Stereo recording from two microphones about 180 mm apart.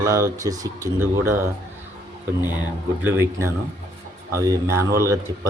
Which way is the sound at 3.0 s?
15° right (ahead or behind).